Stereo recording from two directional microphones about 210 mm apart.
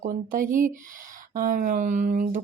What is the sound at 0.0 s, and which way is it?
Speech, 40° right (ahead or behind).